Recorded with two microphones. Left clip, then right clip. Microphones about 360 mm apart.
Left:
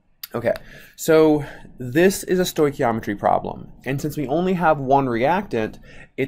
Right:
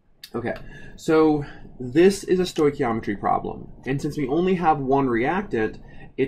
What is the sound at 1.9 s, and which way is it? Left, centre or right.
Speech, left.